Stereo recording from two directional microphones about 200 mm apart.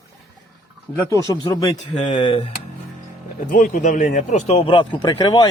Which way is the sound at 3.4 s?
40° left (ahead or behind).